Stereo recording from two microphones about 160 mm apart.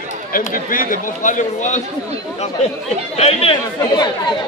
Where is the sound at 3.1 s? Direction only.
40° left (ahead or behind).